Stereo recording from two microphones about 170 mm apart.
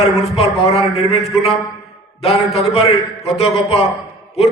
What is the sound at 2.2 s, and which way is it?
A man's voice, 35° left (ahead or behind).